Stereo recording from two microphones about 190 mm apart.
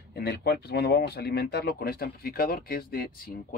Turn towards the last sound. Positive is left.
turn(degrees=50)  # may be behind; listen again after turning